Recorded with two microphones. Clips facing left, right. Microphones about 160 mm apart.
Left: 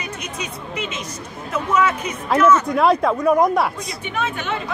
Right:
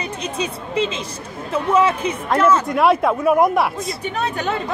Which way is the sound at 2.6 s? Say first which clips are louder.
Right 1 dB; centre (ahead or behind).